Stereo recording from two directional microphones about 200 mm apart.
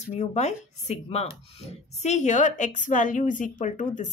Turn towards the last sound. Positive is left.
turn(degrees=40)  # may be behind; listen again after turning